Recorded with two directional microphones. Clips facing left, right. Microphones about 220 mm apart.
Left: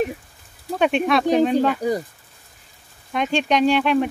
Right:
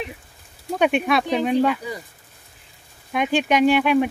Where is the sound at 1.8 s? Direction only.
45° left (ahead or behind).